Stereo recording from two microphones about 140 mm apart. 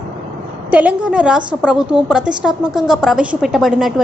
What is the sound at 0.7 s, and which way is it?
A woman's voice, 10° right (ahead or behind).